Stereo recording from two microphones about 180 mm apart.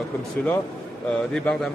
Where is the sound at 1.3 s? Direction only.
5° left (ahead or behind).